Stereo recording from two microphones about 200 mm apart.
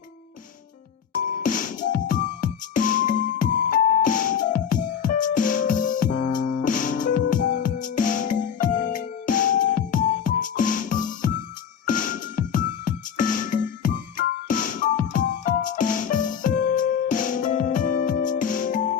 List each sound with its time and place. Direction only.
1.4 s music: 40° left (ahead or behind)